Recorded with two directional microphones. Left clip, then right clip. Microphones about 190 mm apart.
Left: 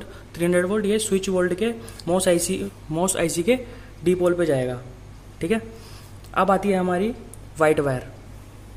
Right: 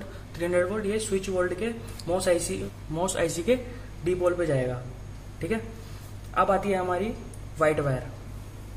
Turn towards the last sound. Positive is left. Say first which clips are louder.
# left 5 dB
turn(degrees=45)  # may be behind; listen again after turning